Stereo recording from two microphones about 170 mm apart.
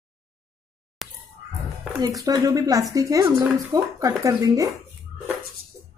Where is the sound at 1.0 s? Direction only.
Centre (ahead or behind).